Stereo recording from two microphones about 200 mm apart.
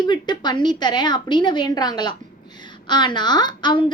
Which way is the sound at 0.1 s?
20° left (ahead or behind).